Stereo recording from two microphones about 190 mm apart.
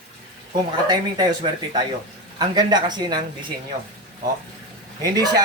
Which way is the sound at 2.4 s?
20° right (ahead or behind).